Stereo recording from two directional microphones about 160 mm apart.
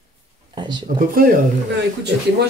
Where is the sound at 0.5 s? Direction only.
25° right (ahead or behind).